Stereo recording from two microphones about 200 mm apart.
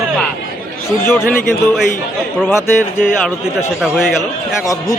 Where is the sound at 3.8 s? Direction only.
5° right (ahead or behind).